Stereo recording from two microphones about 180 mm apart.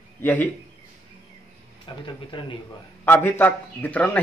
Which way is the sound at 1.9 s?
25° left (ahead or behind).